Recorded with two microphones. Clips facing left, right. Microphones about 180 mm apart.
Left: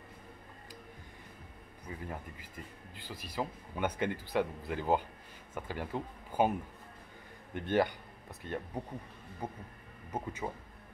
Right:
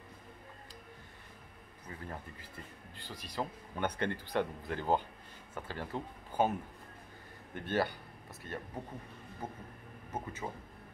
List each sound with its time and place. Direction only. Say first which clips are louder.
1.9 s speech: left 2 dB; 15° left (ahead or behind)
7.5 s speech: left 3 dB; 15° left (ahead or behind)